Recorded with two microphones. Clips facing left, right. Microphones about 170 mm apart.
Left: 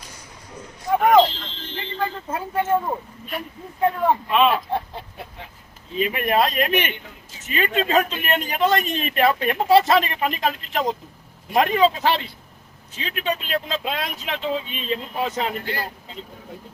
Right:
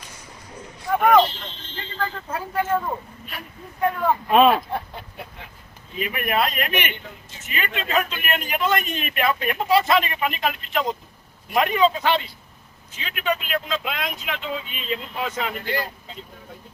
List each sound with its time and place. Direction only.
1.2 s a sound: 90° left
2.0 s speech: 25° left (ahead or behind)
4.3 s speech: 45° right (ahead or behind)
6.0 s speech: 30° left (ahead or behind)